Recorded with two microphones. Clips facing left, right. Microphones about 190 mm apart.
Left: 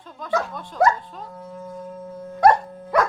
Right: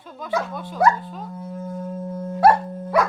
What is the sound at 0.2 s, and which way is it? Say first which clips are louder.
Speech: even; 5° right (ahead or behind).